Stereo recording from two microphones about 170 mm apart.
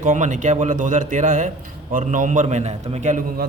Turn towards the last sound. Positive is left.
turn(degrees=-40)  # may be behind; listen again after turning